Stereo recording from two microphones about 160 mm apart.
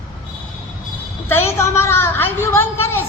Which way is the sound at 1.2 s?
15° left (ahead or behind).